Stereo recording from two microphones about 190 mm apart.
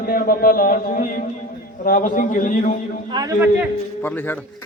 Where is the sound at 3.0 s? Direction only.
20° right (ahead or behind).